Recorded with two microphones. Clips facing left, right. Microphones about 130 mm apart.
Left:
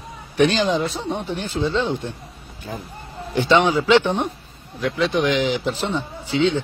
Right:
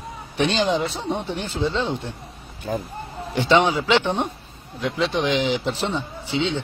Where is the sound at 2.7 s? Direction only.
40° right (ahead or behind).